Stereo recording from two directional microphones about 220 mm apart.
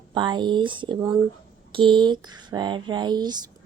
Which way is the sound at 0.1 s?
20° right (ahead or behind).